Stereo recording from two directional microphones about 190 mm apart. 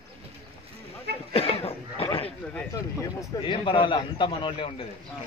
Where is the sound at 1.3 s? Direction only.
30° left (ahead or behind).